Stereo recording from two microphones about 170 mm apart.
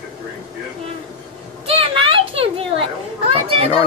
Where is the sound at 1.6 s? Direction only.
35° right (ahead or behind).